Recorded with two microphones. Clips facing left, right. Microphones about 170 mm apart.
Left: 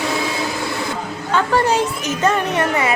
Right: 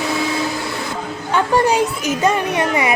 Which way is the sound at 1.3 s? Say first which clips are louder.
Right 1 dB; 15° right (ahead or behind).